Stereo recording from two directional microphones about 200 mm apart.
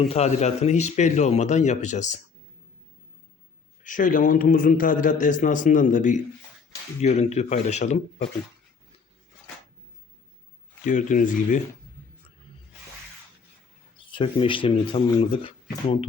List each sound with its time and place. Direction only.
0.0 s a man's voice: 30° left (ahead or behind)
3.8 s a man's voice: 40° left (ahead or behind)
10.8 s a man's voice: 40° left (ahead or behind)
14.1 s speech: 25° left (ahead or behind)